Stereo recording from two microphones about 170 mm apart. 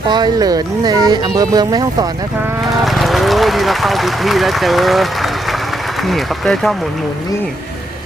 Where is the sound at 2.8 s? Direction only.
Centre (ahead or behind).